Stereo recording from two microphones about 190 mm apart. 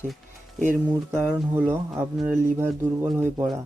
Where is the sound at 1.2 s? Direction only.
10° right (ahead or behind).